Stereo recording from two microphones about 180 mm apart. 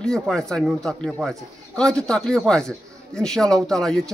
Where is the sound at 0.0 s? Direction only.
5° left (ahead or behind).